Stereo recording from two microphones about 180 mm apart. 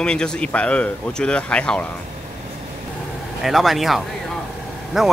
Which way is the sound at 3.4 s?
Centre (ahead or behind).